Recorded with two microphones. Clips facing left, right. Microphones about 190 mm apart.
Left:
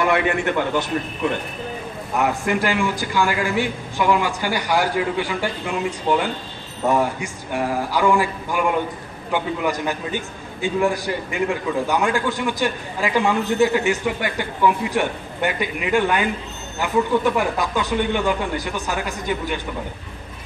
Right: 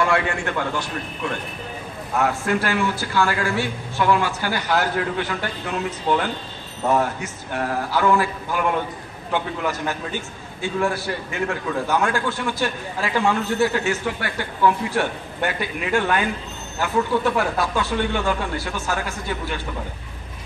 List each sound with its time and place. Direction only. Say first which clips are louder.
0.0 s a man's voice: left 2 dB; 20° left (ahead or behind)
2.1 s a man's voice: left 1 dB; 15° left (ahead or behind)